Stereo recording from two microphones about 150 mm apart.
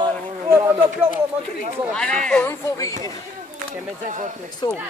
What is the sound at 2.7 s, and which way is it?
Speech, 25° left (ahead or behind).